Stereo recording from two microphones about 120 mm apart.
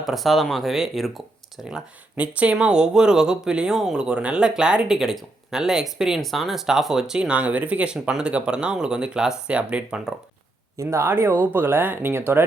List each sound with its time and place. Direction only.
0.0 s speech: centre (ahead or behind)
2.1 s speech: 10° right (ahead or behind)
10.8 s speech: 20° right (ahead or behind)